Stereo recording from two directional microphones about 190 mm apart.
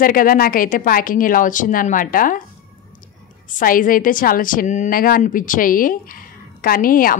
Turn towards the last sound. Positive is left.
turn(degrees=45)  # may be behind; listen again after turning